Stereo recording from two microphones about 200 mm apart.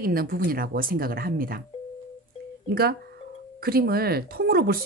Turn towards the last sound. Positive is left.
turn(degrees=-50)  # may be behind; listen again after turning